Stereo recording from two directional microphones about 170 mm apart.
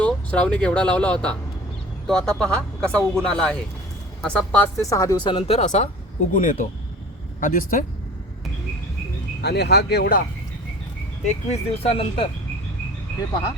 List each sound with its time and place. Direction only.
0.0 s speech: 5° left (ahead or behind); by 5.9 s 40° left (ahead or behind)
6.3 s speech: 50° left (ahead or behind)
9.4 s speech: 80° left
11.3 s speech: 40° left (ahead or behind)